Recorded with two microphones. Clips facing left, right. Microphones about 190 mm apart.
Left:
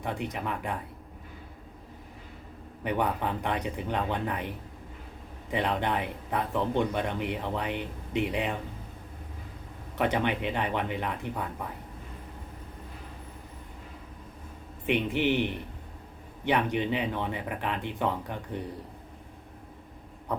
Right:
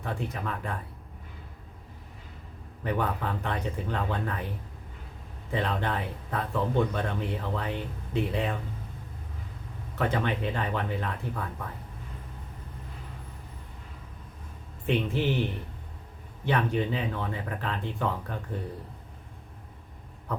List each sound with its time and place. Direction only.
0.0 s speech: 15° left (ahead or behind)
2.8 s speech: 15° left (ahead or behind)
10.0 s speech: 15° left (ahead or behind)
14.8 s speech: 15° left (ahead or behind)